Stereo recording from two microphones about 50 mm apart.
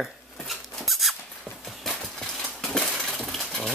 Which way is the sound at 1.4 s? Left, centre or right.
Centre.